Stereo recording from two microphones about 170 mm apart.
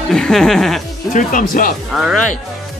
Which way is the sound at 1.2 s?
50° left (ahead or behind).